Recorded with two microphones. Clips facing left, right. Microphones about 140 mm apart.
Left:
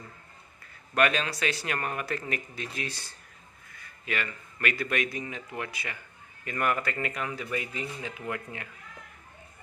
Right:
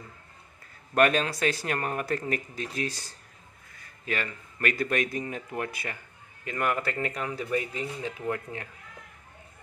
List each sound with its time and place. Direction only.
0.9 s a man's voice: 45° right (ahead or behind)
6.4 s a man's voice: 20° right (ahead or behind)